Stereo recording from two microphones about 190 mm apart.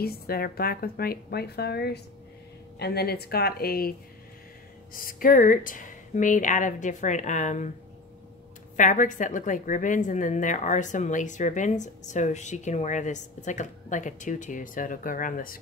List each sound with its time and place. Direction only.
0.0 s a woman's voice: 55° left (ahead or behind)
4.9 s speech: 50° left (ahead or behind)
8.7 s a woman's voice: 40° left (ahead or behind)